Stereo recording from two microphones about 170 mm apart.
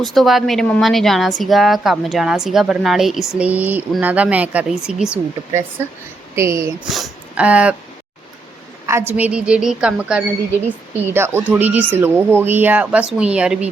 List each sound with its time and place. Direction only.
0.0 s a woman's voice: centre (ahead or behind)
6.3 s speech: 15° right (ahead or behind)
6.8 s speech: centre (ahead or behind)
8.9 s speech: 15° right (ahead or behind)